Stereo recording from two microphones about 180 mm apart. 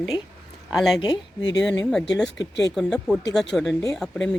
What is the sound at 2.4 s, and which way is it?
Speech, 90° left.